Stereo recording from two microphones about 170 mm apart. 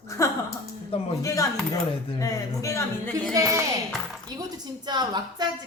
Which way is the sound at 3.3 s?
20° right (ahead or behind).